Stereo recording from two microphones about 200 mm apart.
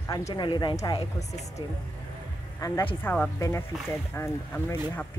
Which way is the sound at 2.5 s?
15° left (ahead or behind).